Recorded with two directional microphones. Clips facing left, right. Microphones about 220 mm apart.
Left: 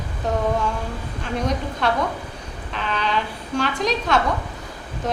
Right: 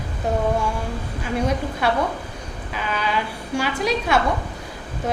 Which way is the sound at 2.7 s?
5° right (ahead or behind).